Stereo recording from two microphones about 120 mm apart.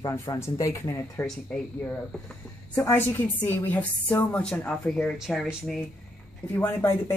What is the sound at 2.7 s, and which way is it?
Speech, 20° left (ahead or behind).